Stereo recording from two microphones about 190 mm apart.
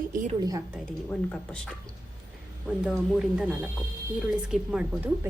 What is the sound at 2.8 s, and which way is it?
Speech, centre (ahead or behind).